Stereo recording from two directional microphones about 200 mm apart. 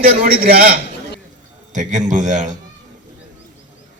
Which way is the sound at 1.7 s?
35° right (ahead or behind).